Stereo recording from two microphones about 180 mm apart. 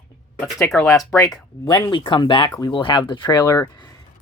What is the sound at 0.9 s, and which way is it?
Speech, 20° left (ahead or behind).